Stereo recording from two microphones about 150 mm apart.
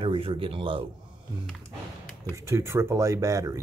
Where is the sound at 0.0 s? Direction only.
35° right (ahead or behind).